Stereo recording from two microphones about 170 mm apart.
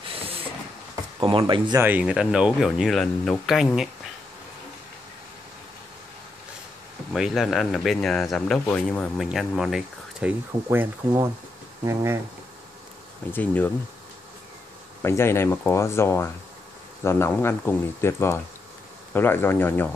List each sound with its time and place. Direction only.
1.2 s speech: 30° right (ahead or behind)
1.8 s speech: 10° right (ahead or behind)
7.1 s speech: centre (ahead or behind)
10.7 s speech: 15° right (ahead or behind)
13.3 s speech: 10° left (ahead or behind)
15.0 s speech: 15° left (ahead or behind)